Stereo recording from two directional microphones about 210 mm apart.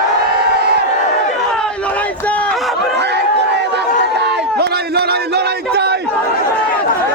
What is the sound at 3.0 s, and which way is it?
Chatter, 55° right (ahead or behind).